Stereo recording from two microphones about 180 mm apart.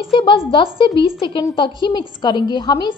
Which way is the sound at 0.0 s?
30° left (ahead or behind).